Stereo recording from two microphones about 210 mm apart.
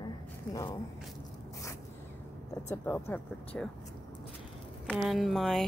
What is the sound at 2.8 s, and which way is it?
Speech, 10° left (ahead or behind).